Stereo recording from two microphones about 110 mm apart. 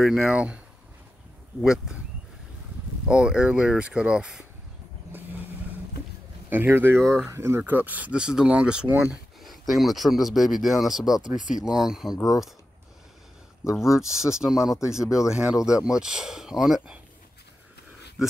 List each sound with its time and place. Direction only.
0.0 s speech: 5° right (ahead or behind)
1.6 s speech: 5° right (ahead or behind)
3.1 s speech: 10° right (ahead or behind)
6.5 s speech: 20° right (ahead or behind)
13.6 s speech: 5° right (ahead or behind)